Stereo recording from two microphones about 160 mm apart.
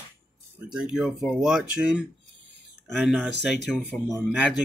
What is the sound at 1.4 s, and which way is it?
Speech, 5° right (ahead or behind).